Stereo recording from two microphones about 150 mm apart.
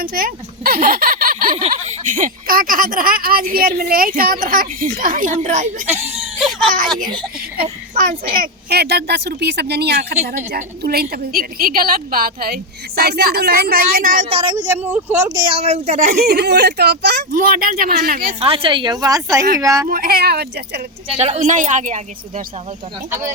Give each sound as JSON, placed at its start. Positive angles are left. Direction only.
{"t": 0.0, "sound": "speech", "side_deg": -75}
{"t": 1.8, "sound": "a woman's voice", "side_deg": -55}
{"t": 7.9, "sound": "a woman's voice", "side_deg": -70}
{"t": 13.0, "sound": "speech", "side_deg": -90}
{"t": 14.3, "sound": "a woman's voice", "side_deg": -40}
{"t": 14.5, "sound": "speech", "side_deg": -25}
{"t": 15.4, "sound": "a woman's voice", "side_deg": -40}
{"t": 16.0, "sound": "speech", "side_deg": -80}
{"t": 18.3, "sound": "a woman's voice", "side_deg": -40}
{"t": 19.9, "sound": "speech", "side_deg": -85}
{"t": 21.2, "sound": "a woman's voice", "side_deg": -50}